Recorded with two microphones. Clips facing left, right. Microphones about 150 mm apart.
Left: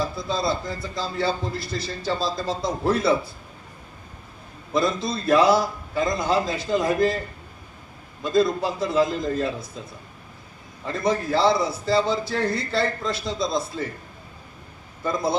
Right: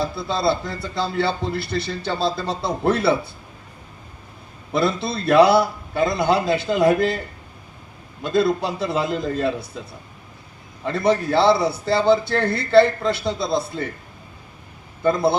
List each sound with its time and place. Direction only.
0.2 s a man's voice: 65° right (ahead or behind)
4.7 s a man's voice: 70° right (ahead or behind)
8.2 s a man's voice: 70° right (ahead or behind)
10.8 s a man's voice: 70° right (ahead or behind)
15.0 s a man's voice: 65° right (ahead or behind)